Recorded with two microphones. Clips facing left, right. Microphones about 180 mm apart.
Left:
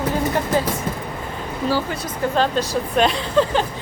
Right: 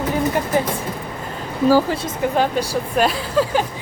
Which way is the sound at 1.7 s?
40° right (ahead or behind).